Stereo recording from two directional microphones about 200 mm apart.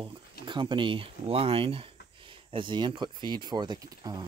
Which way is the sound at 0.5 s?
25° right (ahead or behind).